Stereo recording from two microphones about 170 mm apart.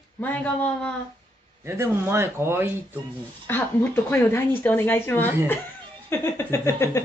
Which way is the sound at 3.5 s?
10° left (ahead or behind).